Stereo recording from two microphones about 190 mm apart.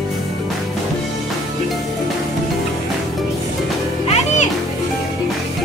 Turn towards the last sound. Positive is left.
turn(degrees=40)  # may be behind; listen again after turning